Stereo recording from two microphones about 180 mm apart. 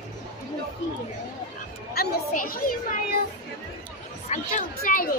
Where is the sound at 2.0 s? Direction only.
55° left (ahead or behind).